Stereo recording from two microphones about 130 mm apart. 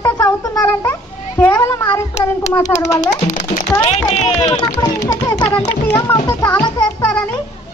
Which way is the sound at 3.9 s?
60° left (ahead or behind).